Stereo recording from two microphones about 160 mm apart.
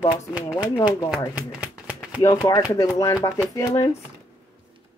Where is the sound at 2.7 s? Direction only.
20° left (ahead or behind).